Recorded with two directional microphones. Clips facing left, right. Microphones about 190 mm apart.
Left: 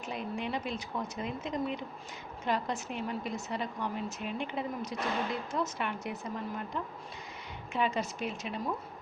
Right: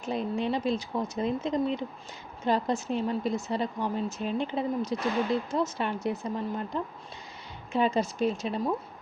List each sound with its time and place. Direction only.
0.0 s speech: 30° right (ahead or behind)